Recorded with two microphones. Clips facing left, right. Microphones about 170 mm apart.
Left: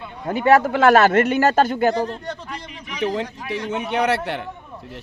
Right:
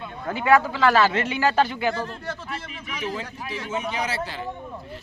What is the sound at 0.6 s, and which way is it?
Speech, 55° left (ahead or behind).